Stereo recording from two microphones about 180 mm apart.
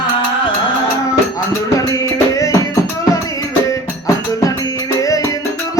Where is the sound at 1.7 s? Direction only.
15° left (ahead or behind).